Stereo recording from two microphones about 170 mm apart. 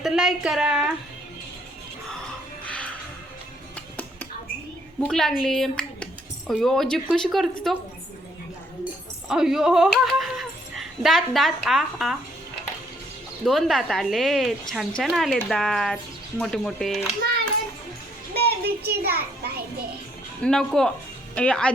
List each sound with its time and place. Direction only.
0.0 s a woman's voice: centre (ahead or behind)
2.6 s music: 5° left (ahead or behind)
4.9 s a woman's voice: 5° left (ahead or behind)
9.3 s speech: 5° right (ahead or behind)
13.4 s a woman's voice: centre (ahead or behind)
18.3 s a sound: 70° right (ahead or behind)
20.4 s a woman's voice: 5° left (ahead or behind)